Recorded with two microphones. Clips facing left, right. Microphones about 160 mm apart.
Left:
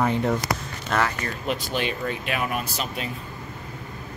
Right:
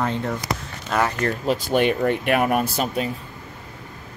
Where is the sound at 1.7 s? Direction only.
60° right (ahead or behind).